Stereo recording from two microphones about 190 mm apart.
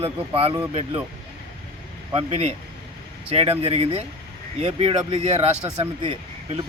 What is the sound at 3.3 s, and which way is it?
Speech, 30° right (ahead or behind).